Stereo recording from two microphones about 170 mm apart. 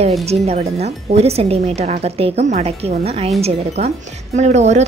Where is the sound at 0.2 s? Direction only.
40° right (ahead or behind).